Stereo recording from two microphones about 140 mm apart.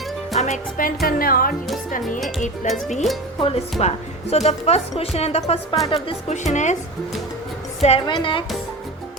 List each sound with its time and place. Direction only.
0.3 s music: 55° left (ahead or behind)
1.0 s speech: 90° left
2.6 s speech: centre (ahead or behind)
3.4 s speech: 45° left (ahead or behind)
7.8 s a woman's voice: 50° left (ahead or behind)
8.0 s a woman's voice: 35° left (ahead or behind)